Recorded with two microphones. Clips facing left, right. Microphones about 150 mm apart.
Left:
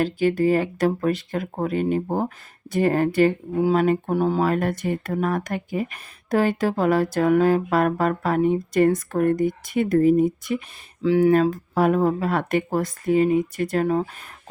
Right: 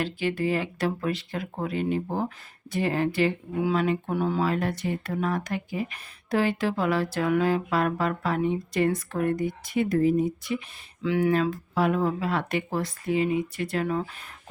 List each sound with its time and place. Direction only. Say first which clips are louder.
0.0 s speech: left 7 dB; 40° left (ahead or behind)
11.0 s speech: left 6 dB; 35° left (ahead or behind)